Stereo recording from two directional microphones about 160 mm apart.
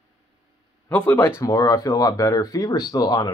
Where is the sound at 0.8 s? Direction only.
10° left (ahead or behind).